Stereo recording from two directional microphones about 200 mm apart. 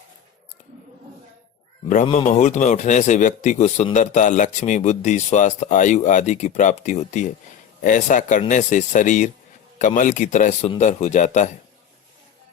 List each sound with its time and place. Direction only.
2.0 s speech: 35° left (ahead or behind)